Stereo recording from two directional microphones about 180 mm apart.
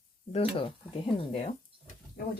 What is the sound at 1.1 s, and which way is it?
Speech, 35° left (ahead or behind).